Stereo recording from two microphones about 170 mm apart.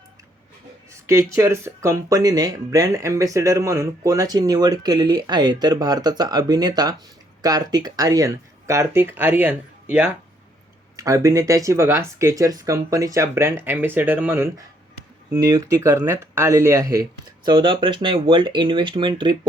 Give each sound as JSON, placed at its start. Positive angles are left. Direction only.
{"t": 1.0, "sound": "speech", "side_deg": -15}